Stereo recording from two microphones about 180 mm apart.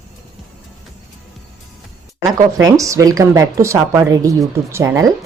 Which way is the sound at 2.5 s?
20° right (ahead or behind).